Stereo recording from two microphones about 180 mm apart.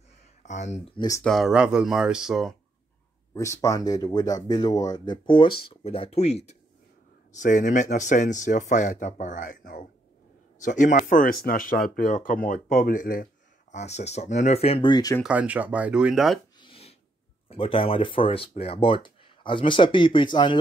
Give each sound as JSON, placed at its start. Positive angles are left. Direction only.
{"t": 0.4, "sound": "speech", "side_deg": 40}
{"t": 0.9, "sound": "speech", "side_deg": 20}
{"t": 1.2, "sound": "speech", "side_deg": 0}
{"t": 3.3, "sound": "speech", "side_deg": 15}
{"t": 15.2, "sound": "speech", "side_deg": -10}
{"t": 16.5, "sound": "a sound", "side_deg": 30}
{"t": 17.5, "sound": "speech", "side_deg": 30}